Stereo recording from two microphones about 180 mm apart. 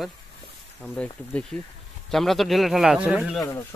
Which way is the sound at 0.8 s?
5° left (ahead or behind).